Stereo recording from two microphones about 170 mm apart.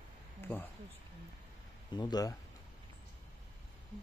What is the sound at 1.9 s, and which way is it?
Speech, 25° left (ahead or behind).